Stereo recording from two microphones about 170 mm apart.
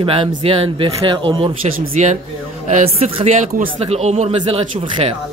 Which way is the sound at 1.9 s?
45° right (ahead or behind).